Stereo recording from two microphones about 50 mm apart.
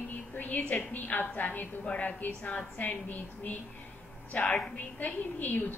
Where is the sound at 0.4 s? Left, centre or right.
Left.